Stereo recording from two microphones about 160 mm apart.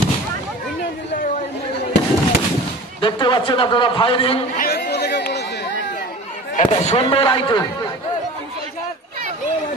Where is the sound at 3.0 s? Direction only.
30° left (ahead or behind).